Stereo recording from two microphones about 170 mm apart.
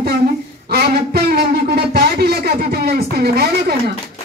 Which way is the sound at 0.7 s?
70° right (ahead or behind).